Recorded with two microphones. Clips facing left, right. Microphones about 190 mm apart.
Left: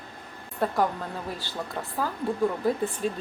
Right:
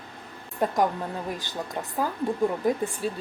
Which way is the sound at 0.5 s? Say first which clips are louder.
Right 1 dB; 15° right (ahead or behind).